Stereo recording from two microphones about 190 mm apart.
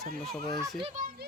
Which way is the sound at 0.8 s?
40° right (ahead or behind).